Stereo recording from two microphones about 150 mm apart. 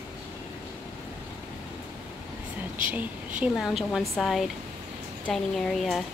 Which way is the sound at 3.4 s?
Centre (ahead or behind).